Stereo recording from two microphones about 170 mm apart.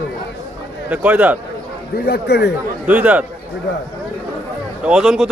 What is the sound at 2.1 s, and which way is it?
Speech, 75° left (ahead or behind).